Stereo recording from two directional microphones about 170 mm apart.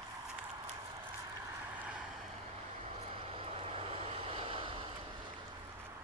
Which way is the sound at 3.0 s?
30° right (ahead or behind).